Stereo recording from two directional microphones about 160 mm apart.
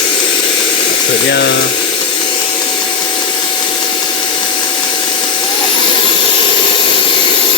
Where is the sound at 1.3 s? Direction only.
90° left.